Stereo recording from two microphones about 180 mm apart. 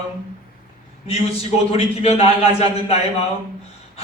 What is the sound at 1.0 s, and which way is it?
A man's voice, 35° left (ahead or behind).